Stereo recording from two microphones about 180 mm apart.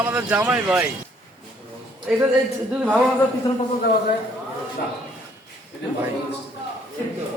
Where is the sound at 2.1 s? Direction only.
5° right (ahead or behind).